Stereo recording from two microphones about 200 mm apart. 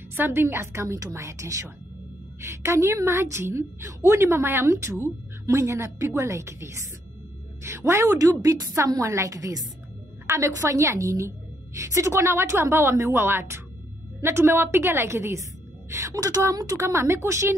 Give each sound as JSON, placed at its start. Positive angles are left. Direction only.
{"t": 0.1, "sound": "a woman's voice", "side_deg": -10}